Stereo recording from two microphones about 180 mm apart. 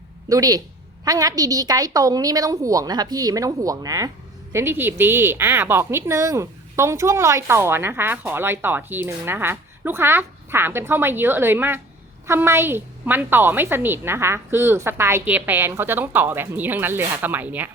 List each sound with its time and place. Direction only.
0.3 s a woman's voice: 20° right (ahead or behind)